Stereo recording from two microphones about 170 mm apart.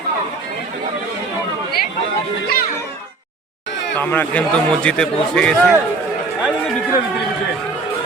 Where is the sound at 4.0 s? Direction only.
10° left (ahead or behind).